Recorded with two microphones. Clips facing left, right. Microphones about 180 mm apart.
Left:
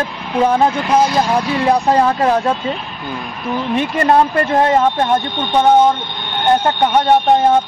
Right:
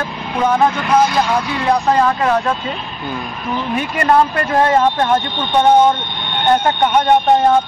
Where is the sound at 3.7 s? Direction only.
20° left (ahead or behind).